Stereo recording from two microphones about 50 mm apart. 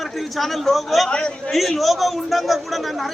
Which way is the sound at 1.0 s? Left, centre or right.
Centre.